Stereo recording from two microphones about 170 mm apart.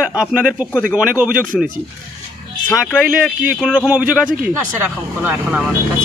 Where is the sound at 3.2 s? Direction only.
5° right (ahead or behind).